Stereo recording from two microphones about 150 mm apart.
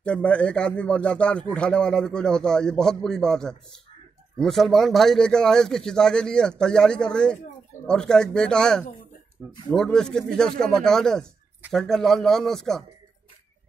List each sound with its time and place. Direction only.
0.0 s a man's voice: 5° left (ahead or behind)